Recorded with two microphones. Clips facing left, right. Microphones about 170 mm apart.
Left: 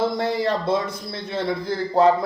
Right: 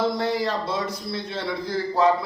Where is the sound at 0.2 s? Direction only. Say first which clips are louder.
Left 2 dB; 50° left (ahead or behind).